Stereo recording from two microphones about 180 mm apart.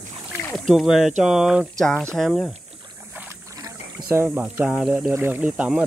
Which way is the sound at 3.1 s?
15° right (ahead or behind).